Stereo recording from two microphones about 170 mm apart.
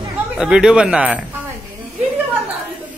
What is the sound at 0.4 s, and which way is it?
Speech, 5° right (ahead or behind).